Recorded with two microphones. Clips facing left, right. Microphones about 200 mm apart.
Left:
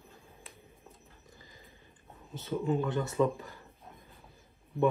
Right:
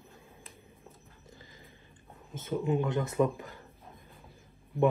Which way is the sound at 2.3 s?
15° right (ahead or behind).